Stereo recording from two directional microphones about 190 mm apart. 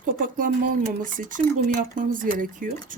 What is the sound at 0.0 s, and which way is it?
Speech, 45° right (ahead or behind).